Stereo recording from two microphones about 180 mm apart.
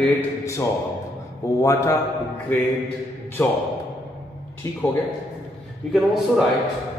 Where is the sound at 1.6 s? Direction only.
15° left (ahead or behind).